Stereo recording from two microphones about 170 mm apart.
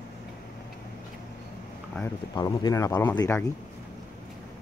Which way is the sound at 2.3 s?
20° left (ahead or behind).